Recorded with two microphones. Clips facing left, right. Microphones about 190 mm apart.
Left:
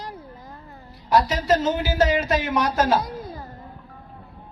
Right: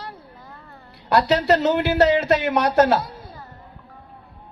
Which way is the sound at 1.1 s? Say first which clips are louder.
Right 2 dB; 65° right (ahead or behind).